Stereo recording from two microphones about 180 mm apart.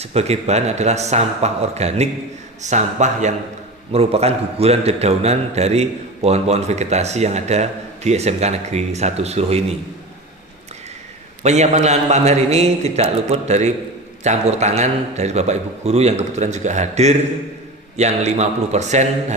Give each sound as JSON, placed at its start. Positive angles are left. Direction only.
{"t": 0.0, "sound": "a man's voice", "side_deg": -35}
{"t": 11.4, "sound": "a man's voice", "side_deg": -40}